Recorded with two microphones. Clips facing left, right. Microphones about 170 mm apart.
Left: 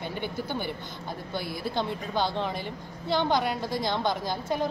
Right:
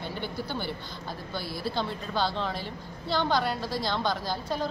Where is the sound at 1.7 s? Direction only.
20° left (ahead or behind).